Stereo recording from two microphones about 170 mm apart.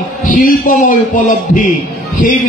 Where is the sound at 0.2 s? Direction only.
55° left (ahead or behind).